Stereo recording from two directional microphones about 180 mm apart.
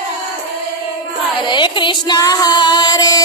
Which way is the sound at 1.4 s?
25° left (ahead or behind).